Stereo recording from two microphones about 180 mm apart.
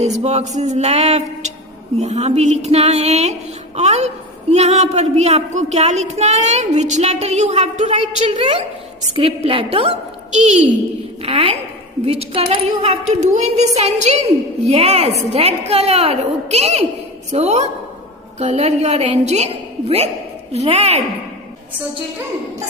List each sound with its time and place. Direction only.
0.0 s a woman's voice: 40° right (ahead or behind)
20.5 s a woman's voice: 35° right (ahead or behind)